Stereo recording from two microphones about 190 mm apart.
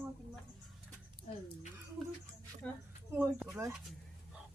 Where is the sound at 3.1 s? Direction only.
10° right (ahead or behind).